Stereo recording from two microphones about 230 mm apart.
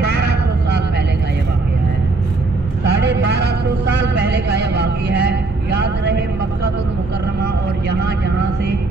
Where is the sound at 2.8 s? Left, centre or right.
Right.